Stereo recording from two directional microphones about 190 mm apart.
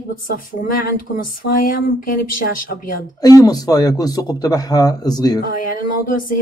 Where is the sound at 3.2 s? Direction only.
20° left (ahead or behind).